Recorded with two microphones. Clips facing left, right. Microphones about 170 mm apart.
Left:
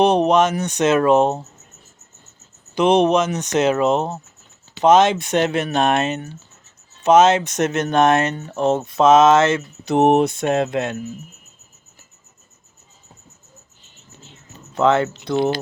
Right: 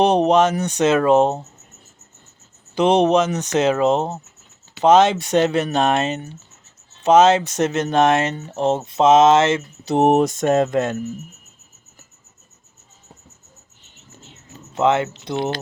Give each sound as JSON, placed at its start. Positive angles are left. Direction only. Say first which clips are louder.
{"t": 0.0, "sound": "speech", "louder": "even", "side_deg": -30}
{"t": 2.7, "sound": "speech", "louder": "even", "side_deg": -30}
{"t": 14.8, "sound": "speech", "louder": "left 1 dB", "side_deg": -20}